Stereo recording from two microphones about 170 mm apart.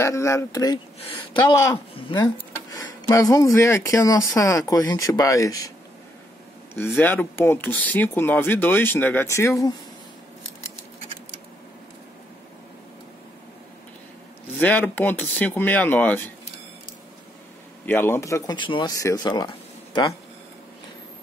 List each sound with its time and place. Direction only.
0.0 s speech: 15° left (ahead or behind)
6.9 s speech: 10° left (ahead or behind)
14.6 s speech: 10° left (ahead or behind)
17.8 s speech: 10° left (ahead or behind)